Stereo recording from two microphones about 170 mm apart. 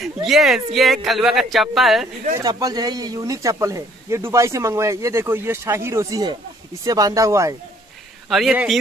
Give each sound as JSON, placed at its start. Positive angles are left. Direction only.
{"t": 0.0, "sound": "speech", "side_deg": 0}
{"t": 2.4, "sound": "speech", "side_deg": -20}
{"t": 8.3, "sound": "speech", "side_deg": 0}